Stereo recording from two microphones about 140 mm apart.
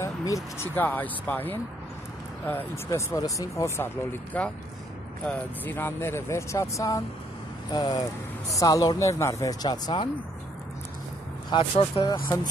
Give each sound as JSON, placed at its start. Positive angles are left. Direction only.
{"t": 0.0, "sound": "speech", "side_deg": 20}
{"t": 2.9, "sound": "speech", "side_deg": 25}
{"t": 11.5, "sound": "speech", "side_deg": 45}